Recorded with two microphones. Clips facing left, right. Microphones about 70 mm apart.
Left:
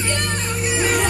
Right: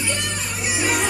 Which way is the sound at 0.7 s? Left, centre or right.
Centre.